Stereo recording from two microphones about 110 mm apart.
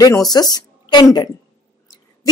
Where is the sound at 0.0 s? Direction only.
35° left (ahead or behind).